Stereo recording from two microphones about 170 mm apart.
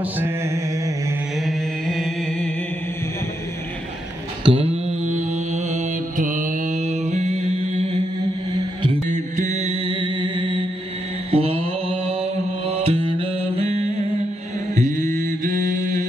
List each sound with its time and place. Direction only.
0.2 s mantra: 15° right (ahead or behind)
1.4 s mantra: centre (ahead or behind)
4.5 s mantra: 35° right (ahead or behind)
9.0 s music: 45° right (ahead or behind); by 10.6 s 30° right (ahead or behind)
11.3 s mantra: 35° right (ahead or behind)
12.7 s music: 35° right (ahead or behind)
14.8 s mantra: 45° right (ahead or behind)